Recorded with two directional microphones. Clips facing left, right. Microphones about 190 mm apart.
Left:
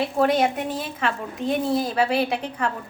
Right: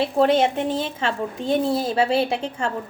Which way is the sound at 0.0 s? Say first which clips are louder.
Right 2 dB; 30° right (ahead or behind).